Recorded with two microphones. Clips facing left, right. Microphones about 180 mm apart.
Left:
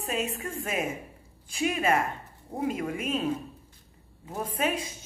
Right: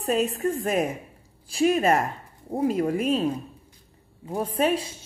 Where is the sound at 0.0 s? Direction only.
35° right (ahead or behind).